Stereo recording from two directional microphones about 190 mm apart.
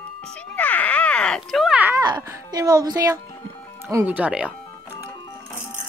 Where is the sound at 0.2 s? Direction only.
5° left (ahead or behind); by 2.0 s 10° right (ahead or behind).